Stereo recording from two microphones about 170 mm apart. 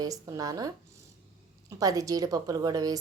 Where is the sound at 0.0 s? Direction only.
20° right (ahead or behind).